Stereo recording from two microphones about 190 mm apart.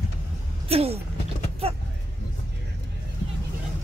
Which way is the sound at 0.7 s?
30° right (ahead or behind).